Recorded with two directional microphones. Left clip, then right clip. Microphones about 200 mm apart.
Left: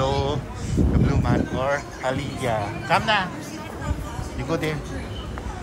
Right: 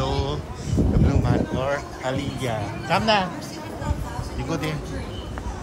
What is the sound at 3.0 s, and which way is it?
Speech, 25° right (ahead or behind).